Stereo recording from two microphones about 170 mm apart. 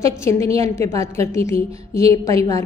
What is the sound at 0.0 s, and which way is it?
A woman's voice, 15° left (ahead or behind).